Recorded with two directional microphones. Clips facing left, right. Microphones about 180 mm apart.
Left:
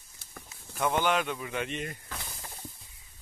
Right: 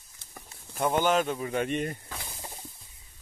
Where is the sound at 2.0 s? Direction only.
15° right (ahead or behind).